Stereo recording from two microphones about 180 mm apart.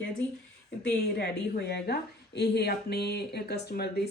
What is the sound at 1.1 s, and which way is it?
Speech, 65° left (ahead or behind).